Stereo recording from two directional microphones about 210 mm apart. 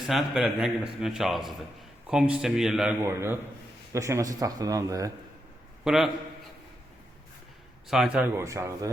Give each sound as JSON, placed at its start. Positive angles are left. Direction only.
{"t": 0.1, "sound": "a man's voice", "side_deg": -5}
{"t": 5.8, "sound": "a man's voice", "side_deg": 0}
{"t": 7.9, "sound": "speech", "side_deg": -5}